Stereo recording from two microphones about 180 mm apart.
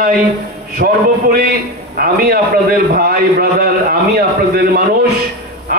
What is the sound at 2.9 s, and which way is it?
A man's voice, 55° right (ahead or behind).